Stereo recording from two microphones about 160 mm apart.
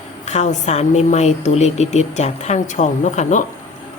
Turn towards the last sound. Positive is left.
turn(degrees=50)  # may be behind; listen again after turning